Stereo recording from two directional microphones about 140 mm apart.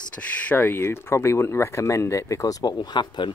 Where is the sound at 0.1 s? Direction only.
10° left (ahead or behind).